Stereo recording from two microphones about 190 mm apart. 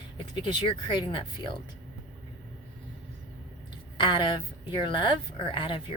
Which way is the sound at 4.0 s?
25° left (ahead or behind).